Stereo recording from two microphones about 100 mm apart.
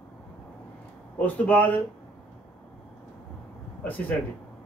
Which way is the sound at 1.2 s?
15° left (ahead or behind).